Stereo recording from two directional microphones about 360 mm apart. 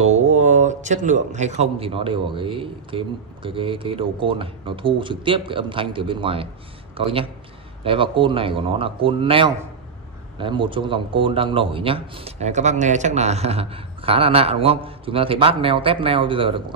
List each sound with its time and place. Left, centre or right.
0.0 s speech: centre